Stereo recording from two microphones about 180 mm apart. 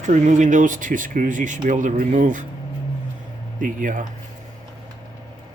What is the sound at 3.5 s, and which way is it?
Speech, 45° right (ahead or behind).